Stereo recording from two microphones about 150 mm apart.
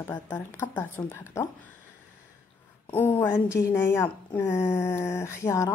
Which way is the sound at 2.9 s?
15° left (ahead or behind).